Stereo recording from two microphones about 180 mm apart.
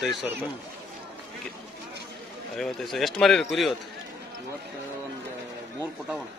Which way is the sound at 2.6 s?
Centre (ahead or behind).